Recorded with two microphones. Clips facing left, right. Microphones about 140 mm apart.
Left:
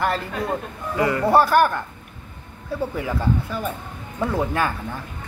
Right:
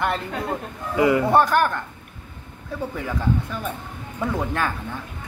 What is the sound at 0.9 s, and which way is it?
Speech, 15° right (ahead or behind).